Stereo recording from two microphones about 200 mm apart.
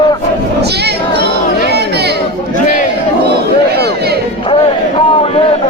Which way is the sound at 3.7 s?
55° right (ahead or behind).